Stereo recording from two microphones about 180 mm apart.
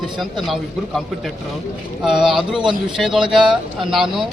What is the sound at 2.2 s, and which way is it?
Speech, centre (ahead or behind).